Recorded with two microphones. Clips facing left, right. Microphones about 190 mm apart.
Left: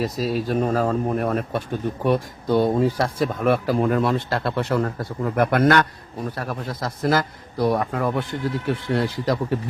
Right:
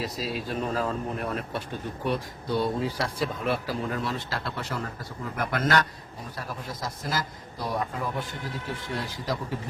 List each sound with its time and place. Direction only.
0.0 s speech: 45° left (ahead or behind); by 9.6 s 65° left (ahead or behind)